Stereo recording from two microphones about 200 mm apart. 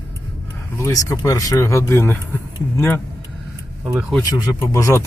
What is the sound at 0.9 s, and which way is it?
Speech, 15° left (ahead or behind).